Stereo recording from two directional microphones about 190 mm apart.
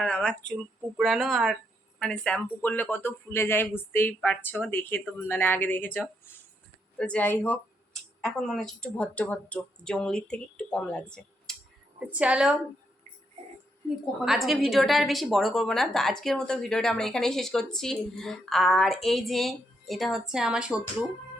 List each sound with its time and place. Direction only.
0.0 s a woman's voice: 5° left (ahead or behind)
11.9 s a woman's voice: 5° right (ahead or behind)
13.4 s music: 35° right (ahead or behind)
14.3 s a woman's voice: centre (ahead or behind)